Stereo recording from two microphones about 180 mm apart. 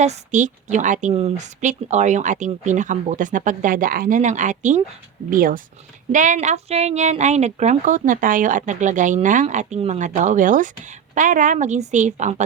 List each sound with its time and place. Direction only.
0.0 s a woman's voice: 40° right (ahead or behind)